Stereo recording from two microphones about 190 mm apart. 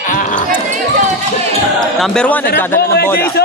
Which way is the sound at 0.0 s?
40° left (ahead or behind).